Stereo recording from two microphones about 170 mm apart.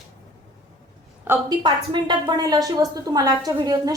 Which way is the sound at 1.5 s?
25° right (ahead or behind).